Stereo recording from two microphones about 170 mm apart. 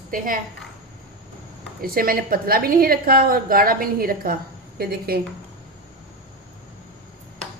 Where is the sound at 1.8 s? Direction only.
60° right (ahead or behind).